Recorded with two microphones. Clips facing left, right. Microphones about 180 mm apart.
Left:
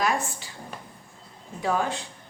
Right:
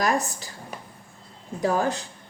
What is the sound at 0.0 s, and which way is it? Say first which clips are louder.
Speech: right 2 dB; 40° right (ahead or behind).